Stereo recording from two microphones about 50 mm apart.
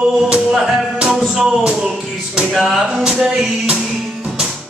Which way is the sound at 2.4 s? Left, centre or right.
Centre.